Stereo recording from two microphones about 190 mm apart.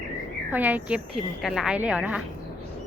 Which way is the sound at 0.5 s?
10° right (ahead or behind).